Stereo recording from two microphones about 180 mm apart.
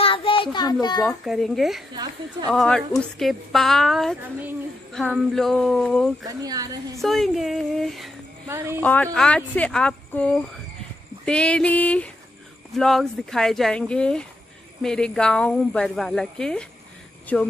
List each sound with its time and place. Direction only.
0.0 s a sound: 30° left (ahead or behind)
1.0 s speech: centre (ahead or behind)
5.3 s speech: centre (ahead or behind)
6.2 s speech: 20° right (ahead or behind)
7.0 s speech: centre (ahead or behind)
8.5 s a woman's voice: 15° right (ahead or behind)
8.8 s speech: 10° left (ahead or behind)
11.2 s a sound: 5° left (ahead or behind)
12.7 s speech: centre (ahead or behind)